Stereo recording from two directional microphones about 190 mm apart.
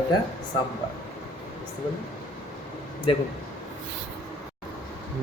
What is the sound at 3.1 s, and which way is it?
Speech, 30° left (ahead or behind).